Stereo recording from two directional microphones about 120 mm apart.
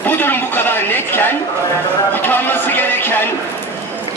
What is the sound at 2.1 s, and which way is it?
A man's voice, 15° left (ahead or behind).